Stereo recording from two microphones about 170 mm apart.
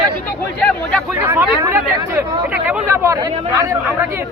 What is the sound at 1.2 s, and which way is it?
Speech, 15° right (ahead or behind).